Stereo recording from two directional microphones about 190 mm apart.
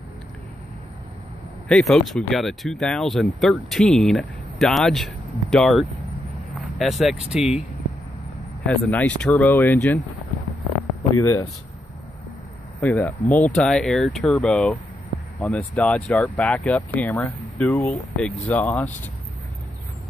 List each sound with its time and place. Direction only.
1.7 s speech: centre (ahead or behind)
8.6 s speech: 5° left (ahead or behind)
11.0 s speech: 15° left (ahead or behind)
12.8 s speech: 10° left (ahead or behind)